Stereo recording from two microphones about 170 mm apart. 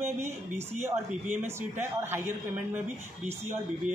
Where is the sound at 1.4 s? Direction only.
15° right (ahead or behind).